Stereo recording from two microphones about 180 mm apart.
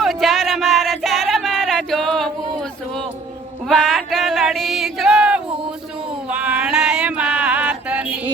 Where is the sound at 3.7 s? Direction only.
Centre (ahead or behind).